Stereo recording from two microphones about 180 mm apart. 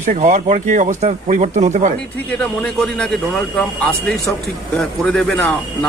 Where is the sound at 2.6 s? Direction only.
5° left (ahead or behind).